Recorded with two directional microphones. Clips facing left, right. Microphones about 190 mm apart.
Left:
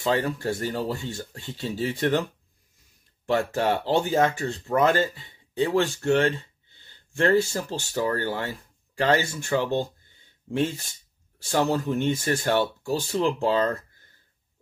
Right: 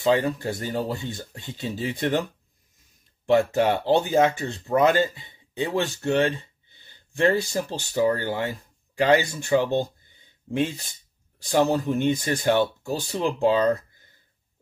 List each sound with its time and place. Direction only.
0.0 s speech: 15° right (ahead or behind)
3.3 s speech: 20° right (ahead or behind)